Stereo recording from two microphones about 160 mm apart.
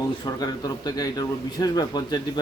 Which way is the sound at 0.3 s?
25° left (ahead or behind).